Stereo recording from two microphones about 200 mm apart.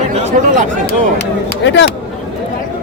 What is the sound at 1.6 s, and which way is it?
Speech, 65° left (ahead or behind).